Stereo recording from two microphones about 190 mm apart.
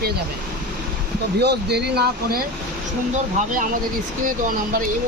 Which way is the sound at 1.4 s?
60° right (ahead or behind).